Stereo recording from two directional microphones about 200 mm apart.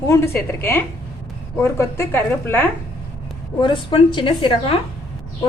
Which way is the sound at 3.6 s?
25° left (ahead or behind).